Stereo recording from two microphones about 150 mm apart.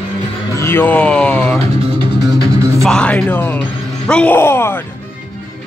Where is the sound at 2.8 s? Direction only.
5° left (ahead or behind).